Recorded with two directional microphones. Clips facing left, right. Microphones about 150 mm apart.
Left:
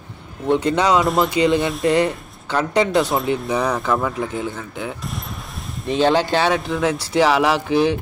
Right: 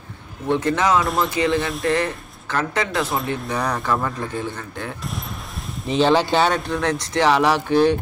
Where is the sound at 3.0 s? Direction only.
Centre (ahead or behind).